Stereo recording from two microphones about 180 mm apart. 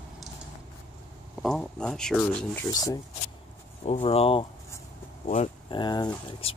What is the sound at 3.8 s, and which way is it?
Speech, 35° left (ahead or behind).